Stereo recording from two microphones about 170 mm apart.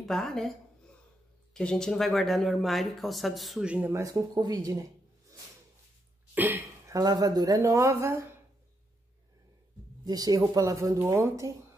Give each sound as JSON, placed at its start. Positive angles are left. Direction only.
{"t": 0.0, "sound": "speech", "side_deg": 5}
{"t": 6.3, "sound": "speech", "side_deg": -10}
{"t": 10.0, "sound": "speech", "side_deg": -20}